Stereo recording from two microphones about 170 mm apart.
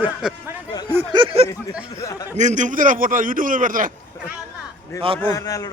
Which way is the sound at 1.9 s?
20° left (ahead or behind).